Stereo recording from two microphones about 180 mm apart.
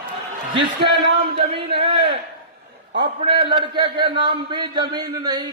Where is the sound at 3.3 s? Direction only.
25° right (ahead or behind).